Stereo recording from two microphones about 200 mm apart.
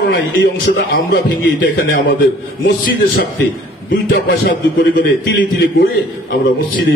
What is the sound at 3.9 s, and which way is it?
A man's voice, 50° left (ahead or behind).